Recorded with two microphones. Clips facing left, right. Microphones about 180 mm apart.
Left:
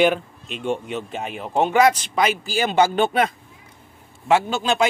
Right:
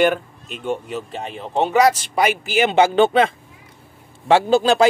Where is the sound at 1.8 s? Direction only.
35° right (ahead or behind).